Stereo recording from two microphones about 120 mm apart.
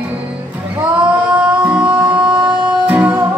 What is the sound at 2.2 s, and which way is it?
Music, 40° right (ahead or behind).